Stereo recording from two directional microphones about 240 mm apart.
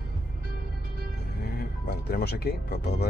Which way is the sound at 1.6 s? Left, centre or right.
Left.